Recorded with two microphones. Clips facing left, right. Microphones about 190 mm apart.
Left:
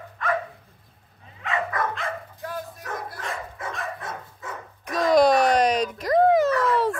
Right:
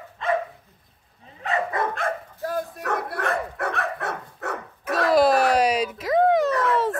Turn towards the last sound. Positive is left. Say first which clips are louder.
# left 1 dB
turn(degrees=0)  # may be behind; listen again after turning